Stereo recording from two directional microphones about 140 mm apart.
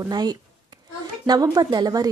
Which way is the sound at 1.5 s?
30° right (ahead or behind).